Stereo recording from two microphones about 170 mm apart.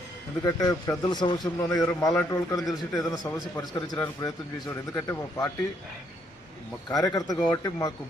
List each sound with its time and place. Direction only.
0.4 s a man's voice: 20° left (ahead or behind)
2.6 s a man's voice: centre (ahead or behind)
3.0 s a man's voice: 20° left (ahead or behind)
7.0 s a man's voice: 20° left (ahead or behind)